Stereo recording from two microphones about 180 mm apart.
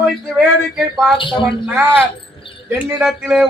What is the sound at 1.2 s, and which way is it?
Speech, 25° left (ahead or behind).